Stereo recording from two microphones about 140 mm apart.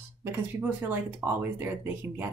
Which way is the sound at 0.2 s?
10° right (ahead or behind).